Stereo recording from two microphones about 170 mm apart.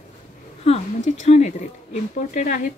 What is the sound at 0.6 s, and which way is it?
Speech, 40° left (ahead or behind).